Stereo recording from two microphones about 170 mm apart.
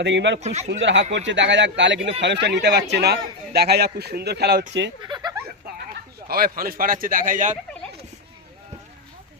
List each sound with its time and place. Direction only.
0.0 s speech: 90° right
0.3 s a man's voice: 40° right (ahead or behind)
0.7 s speech: 90° right; by 4.6 s 70° right (ahead or behind)
5.0 s a sound: 25° right (ahead or behind)
6.2 s a man's voice: 60° right (ahead or behind)